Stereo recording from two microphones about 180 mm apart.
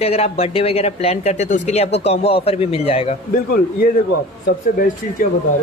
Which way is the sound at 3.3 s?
55° left (ahead or behind).